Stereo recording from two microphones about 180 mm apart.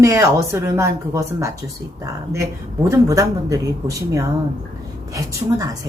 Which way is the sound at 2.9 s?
15° right (ahead or behind).